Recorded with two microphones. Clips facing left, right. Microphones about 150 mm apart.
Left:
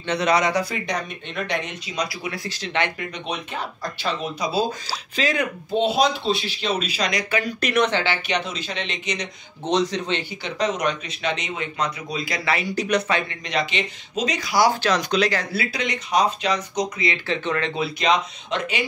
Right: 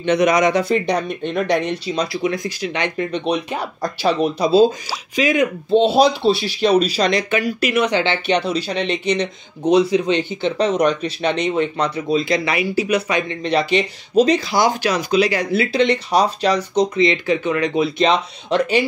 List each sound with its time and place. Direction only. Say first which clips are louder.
0.0 s speech: right 6 dB; 20° right (ahead or behind)
3.0 s speech: right 10 dB; 30° right (ahead or behind)
5.1 s speech: right 7 dB; 15° right (ahead or behind)
5.8 s speech: right 6 dB; 30° right (ahead or behind)
7.4 s speech: right 3 dB; 10° right (ahead or behind)
8.0 s speech: right 6 dB; 25° right (ahead or behind)
9.7 s speech: right 7 dB; 10° right (ahead or behind)
10.4 s speech: right 6 dB; 30° right (ahead or behind)
12.7 s speech: right 3 dB; 5° right (ahead or behind)
13.3 s speech: right 8 dB; 30° right (ahead or behind); by 15.4 s 10° right (ahead or behind)
15.5 s speech: right 10 dB; 25° right (ahead or behind)